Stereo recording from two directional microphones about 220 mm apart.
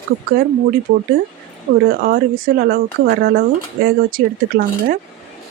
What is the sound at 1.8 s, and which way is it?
Speech, 40° right (ahead or behind).